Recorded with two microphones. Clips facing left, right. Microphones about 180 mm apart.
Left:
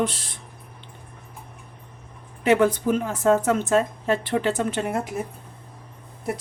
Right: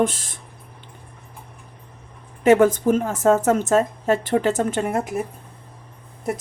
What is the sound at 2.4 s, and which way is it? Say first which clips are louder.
A woman's voice: right 4 dB; 45° right (ahead or behind).